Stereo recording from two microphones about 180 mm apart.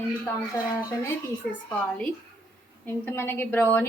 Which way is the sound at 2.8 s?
10° left (ahead or behind).